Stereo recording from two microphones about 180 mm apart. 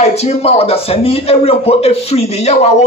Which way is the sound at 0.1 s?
35° left (ahead or behind).